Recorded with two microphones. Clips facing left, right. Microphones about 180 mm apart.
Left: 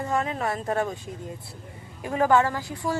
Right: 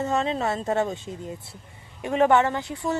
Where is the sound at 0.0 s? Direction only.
25° right (ahead or behind).